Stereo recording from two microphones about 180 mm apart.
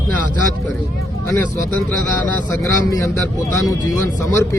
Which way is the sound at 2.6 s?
15° left (ahead or behind).